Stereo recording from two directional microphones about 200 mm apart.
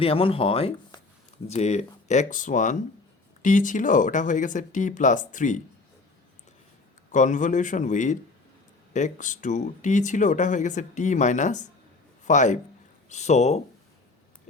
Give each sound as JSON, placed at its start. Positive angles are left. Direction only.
{"t": 0.0, "sound": "speech", "side_deg": 30}
{"t": 7.1, "sound": "a man's voice", "side_deg": 40}